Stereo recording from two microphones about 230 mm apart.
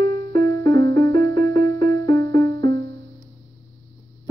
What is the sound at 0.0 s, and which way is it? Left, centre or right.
Music, centre.